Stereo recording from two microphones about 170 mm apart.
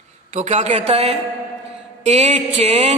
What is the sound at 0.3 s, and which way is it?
A man's voice, 40° right (ahead or behind).